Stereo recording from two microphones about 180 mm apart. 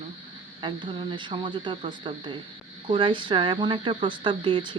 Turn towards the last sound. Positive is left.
turn(degrees=-25)  # may be behind; listen again after turning